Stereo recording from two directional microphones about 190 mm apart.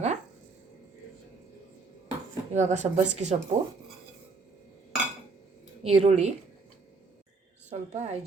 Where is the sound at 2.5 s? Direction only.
35° right (ahead or behind).